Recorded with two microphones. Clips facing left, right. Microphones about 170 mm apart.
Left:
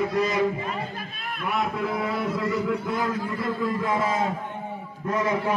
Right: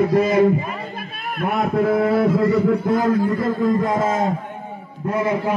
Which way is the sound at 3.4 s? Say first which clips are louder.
Right 8 dB; 45° right (ahead or behind).